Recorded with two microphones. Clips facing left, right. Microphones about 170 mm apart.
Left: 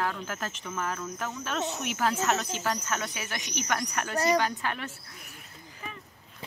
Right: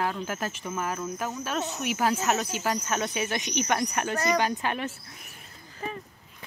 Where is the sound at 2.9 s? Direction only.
20° right (ahead or behind).